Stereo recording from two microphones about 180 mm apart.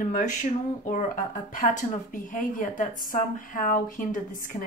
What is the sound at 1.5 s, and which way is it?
Speech, 45° left (ahead or behind).